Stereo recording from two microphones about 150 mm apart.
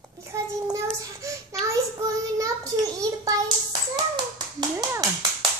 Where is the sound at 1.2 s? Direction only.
20° right (ahead or behind).